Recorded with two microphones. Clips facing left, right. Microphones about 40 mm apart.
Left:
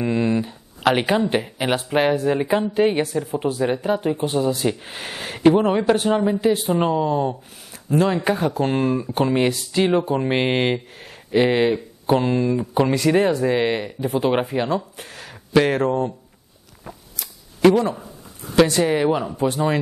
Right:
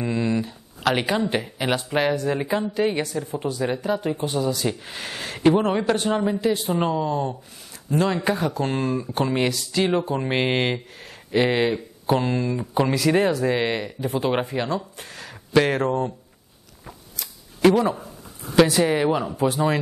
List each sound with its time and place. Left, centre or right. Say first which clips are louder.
0.0 s speech: left 3 dB; centre
16.8 s scissors: left 2 dB; centre
18.6 s speech: left 1 dB; centre